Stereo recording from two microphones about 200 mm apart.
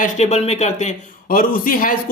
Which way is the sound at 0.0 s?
35° left (ahead or behind).